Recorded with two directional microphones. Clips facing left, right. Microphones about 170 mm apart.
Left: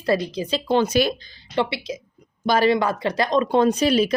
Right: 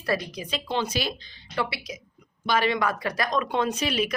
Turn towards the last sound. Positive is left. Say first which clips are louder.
# left 8 dB
turn(degrees=35)  # may be behind; listen again after turning